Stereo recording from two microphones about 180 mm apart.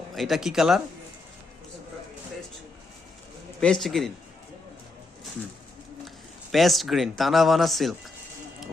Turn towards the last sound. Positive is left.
turn(degrees=0)  # may be behind; listen again after turning